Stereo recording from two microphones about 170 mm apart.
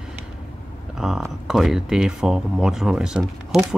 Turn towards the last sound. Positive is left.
turn(degrees=-5)  # may be behind; listen again after turning